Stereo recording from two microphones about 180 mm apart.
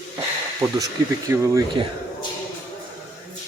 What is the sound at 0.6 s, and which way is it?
Speech, 15° right (ahead or behind).